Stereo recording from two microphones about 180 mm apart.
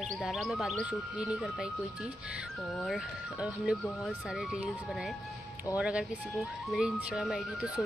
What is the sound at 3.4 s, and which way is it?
Speech, 5° right (ahead or behind).